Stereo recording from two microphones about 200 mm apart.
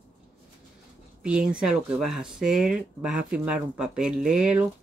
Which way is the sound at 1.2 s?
5° right (ahead or behind).